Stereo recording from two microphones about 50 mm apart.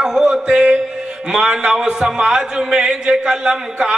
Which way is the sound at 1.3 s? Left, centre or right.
Centre.